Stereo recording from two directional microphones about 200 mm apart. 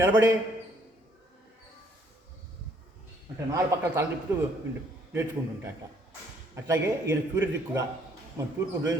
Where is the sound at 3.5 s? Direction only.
15° right (ahead or behind).